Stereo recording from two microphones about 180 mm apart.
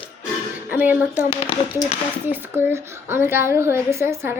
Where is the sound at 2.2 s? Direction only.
10° right (ahead or behind).